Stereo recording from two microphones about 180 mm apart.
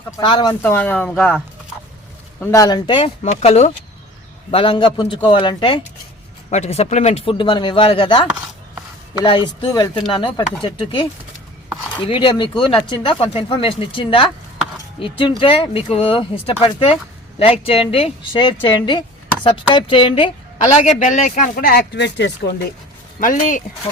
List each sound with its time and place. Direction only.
0.2 s speech: 25° left (ahead or behind)
0.6 s speech: 10° left (ahead or behind)
2.4 s speech: 20° left (ahead or behind)
6.5 s speech: 35° left (ahead or behind)
12.0 s speech: 30° left (ahead or behind)
20.8 s speech: 40° left (ahead or behind); by 22.3 s 75° left (ahead or behind)
23.2 s speech: 45° left (ahead or behind)